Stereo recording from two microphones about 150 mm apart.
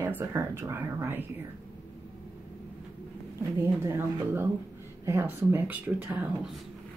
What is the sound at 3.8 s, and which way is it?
Speech, 15° right (ahead or behind).